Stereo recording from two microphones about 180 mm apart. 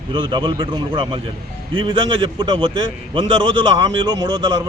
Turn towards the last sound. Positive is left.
turn(degrees=-20)  # may be behind; listen again after turning